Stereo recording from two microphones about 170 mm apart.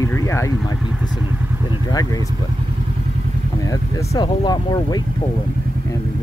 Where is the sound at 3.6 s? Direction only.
20° left (ahead or behind).